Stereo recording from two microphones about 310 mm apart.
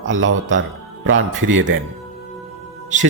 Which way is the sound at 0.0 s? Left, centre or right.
Right.